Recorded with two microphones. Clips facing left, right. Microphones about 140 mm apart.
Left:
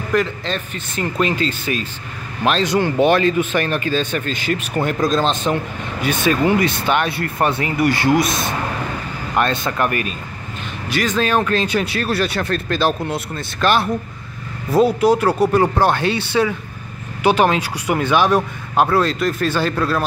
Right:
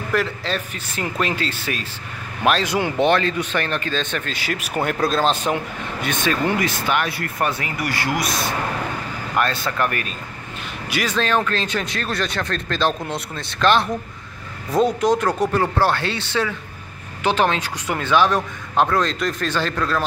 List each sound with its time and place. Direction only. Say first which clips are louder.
0.1 s speech: left 3 dB; 5° right (ahead or behind)
3.0 s speech: left 3 dB; 15° left (ahead or behind); by 5.6 s 5° right (ahead or behind)
6.0 s a man's voice: left 5 dB; 10° left (ahead or behind)
6.6 s speech: left 3 dB; 25° left (ahead or behind)
10.9 s speech: left 4 dB; 5° right (ahead or behind)
11.1 s a man's voice: left 3 dB; 10° left (ahead or behind)